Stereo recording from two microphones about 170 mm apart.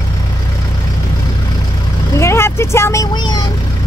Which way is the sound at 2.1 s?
15° left (ahead or behind).